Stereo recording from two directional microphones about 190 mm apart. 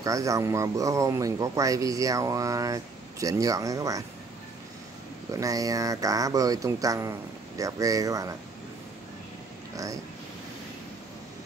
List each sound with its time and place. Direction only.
0.0 s speech: 15° right (ahead or behind)
5.3 s speech: 20° right (ahead or behind)